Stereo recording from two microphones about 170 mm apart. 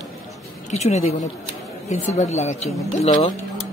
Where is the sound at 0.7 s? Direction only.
40° left (ahead or behind).